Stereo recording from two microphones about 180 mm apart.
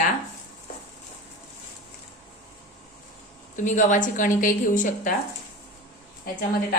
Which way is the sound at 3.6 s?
45° left (ahead or behind).